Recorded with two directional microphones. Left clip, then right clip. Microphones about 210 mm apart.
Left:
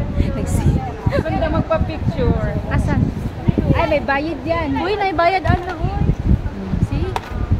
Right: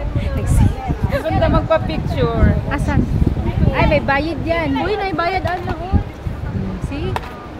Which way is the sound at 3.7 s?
15° right (ahead or behind).